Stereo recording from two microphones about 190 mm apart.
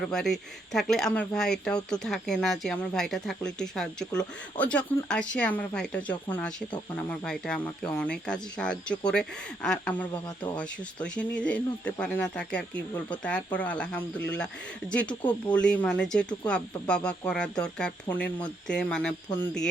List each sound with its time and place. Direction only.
0.0 s speech: centre (ahead or behind)
15.2 s speech: 25° left (ahead or behind)
15.5 s speech: 5° left (ahead or behind)